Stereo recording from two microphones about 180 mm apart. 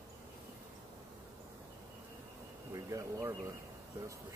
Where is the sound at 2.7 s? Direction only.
20° right (ahead or behind).